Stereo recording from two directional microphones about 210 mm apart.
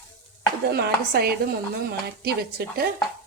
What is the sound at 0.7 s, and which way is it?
Speech, 50° right (ahead or behind).